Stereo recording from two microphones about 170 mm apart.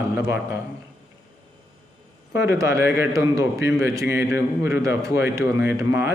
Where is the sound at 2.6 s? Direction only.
15° right (ahead or behind).